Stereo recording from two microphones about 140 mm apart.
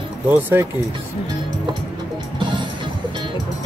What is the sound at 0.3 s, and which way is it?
Speech, 15° right (ahead or behind).